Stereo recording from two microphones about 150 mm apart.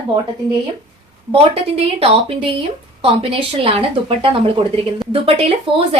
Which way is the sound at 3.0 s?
35° right (ahead or behind).